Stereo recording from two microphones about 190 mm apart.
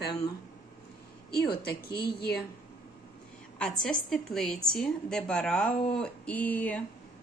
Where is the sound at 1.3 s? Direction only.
55° left (ahead or behind).